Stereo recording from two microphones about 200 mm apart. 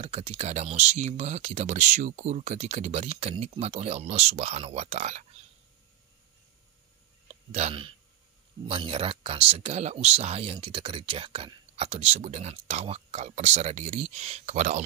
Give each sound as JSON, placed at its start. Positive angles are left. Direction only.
{"t": 0.0, "sound": "speech", "side_deg": -30}
{"t": 7.5, "sound": "speech", "side_deg": -30}